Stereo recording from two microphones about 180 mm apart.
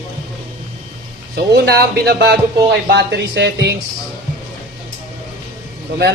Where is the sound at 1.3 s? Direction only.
60° right (ahead or behind).